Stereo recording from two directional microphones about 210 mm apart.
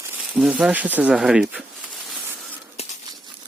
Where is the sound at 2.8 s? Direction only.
30° left (ahead or behind).